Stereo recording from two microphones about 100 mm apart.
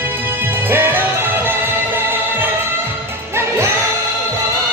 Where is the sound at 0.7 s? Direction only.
20° right (ahead or behind).